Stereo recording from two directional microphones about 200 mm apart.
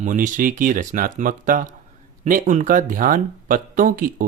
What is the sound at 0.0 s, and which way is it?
Speech, 40° right (ahead or behind).